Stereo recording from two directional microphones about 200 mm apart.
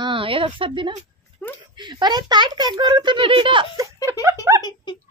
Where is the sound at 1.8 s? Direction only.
20° right (ahead or behind).